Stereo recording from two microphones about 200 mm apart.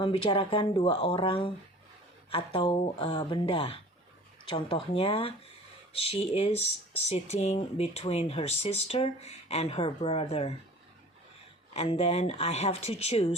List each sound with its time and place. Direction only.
0.0 s speech: 25° left (ahead or behind)
11.7 s speech: 30° left (ahead or behind)